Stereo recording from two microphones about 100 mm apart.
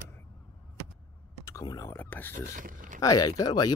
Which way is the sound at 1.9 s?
20° left (ahead or behind).